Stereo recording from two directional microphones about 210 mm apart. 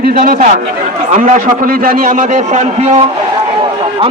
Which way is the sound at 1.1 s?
35° right (ahead or behind).